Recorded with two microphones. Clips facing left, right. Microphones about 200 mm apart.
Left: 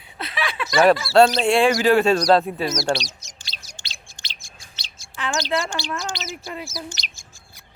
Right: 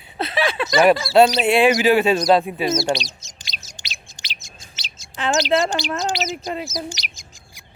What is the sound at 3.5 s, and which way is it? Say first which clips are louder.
Chirp: right 3 dB; 20° right (ahead or behind).